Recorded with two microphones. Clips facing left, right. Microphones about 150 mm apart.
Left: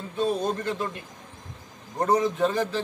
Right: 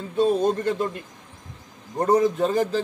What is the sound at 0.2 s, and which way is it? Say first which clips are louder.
Speech: right 6 dB; 40° right (ahead or behind).